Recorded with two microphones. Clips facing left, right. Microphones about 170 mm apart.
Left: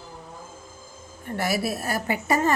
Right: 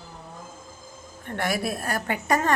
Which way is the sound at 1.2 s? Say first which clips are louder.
Left 1 dB; 5° left (ahead or behind).